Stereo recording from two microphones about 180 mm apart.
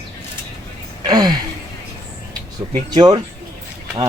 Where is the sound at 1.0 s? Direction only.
20° right (ahead or behind).